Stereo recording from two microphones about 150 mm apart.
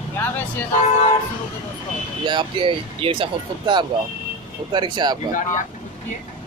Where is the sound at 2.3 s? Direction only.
35° right (ahead or behind).